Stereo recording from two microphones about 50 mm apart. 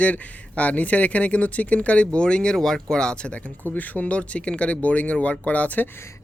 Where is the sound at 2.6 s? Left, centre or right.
Centre; by 5.8 s left.